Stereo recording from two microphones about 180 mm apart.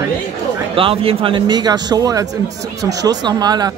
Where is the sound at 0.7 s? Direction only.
30° right (ahead or behind).